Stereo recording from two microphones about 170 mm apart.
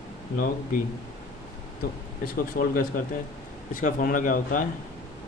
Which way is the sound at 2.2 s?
60° left (ahead or behind).